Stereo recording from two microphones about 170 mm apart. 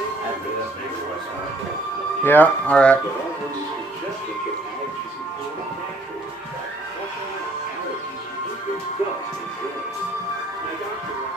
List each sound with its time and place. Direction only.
2.2 s speech: 10° left (ahead or behind)